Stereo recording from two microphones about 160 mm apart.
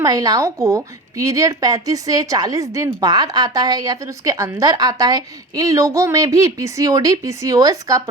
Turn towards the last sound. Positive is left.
turn(degrees=-20)  # may be behind; listen again after turning